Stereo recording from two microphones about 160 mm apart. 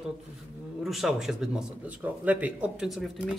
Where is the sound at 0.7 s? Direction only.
Centre (ahead or behind).